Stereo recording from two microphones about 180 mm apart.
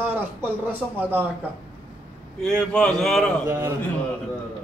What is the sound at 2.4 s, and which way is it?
Speech, 5° left (ahead or behind).